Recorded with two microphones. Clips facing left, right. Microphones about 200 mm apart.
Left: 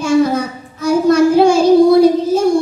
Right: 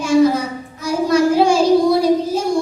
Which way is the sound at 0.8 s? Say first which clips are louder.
Left 5 dB; 55° left (ahead or behind).